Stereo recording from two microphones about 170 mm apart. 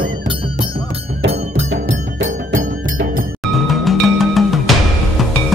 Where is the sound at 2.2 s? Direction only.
50° right (ahead or behind).